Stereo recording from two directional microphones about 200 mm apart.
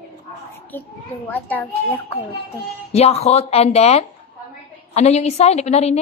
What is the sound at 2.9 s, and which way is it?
A woman's voice, 30° left (ahead or behind).